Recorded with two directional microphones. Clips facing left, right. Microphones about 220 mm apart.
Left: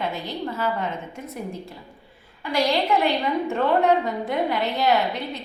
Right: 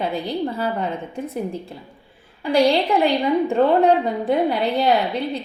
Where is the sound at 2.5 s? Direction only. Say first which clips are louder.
Right 5 dB; 30° right (ahead or behind).